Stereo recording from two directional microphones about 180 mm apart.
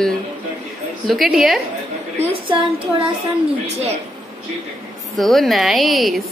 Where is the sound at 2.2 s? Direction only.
35° right (ahead or behind).